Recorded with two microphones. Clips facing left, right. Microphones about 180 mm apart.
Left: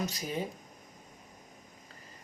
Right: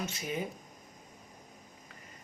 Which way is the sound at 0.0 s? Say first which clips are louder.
Left 1 dB; 35° left (ahead or behind).